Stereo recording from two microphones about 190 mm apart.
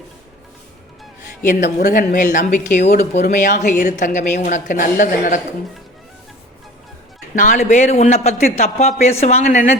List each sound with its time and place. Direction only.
1.5 s speech: 40° left (ahead or behind)
7.3 s speech: 45° left (ahead or behind)